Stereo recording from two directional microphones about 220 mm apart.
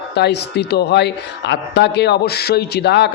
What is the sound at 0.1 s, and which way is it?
A woman's voice, 50° left (ahead or behind).